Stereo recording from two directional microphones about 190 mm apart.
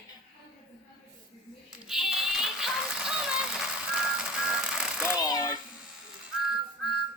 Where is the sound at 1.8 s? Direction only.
Centre (ahead or behind).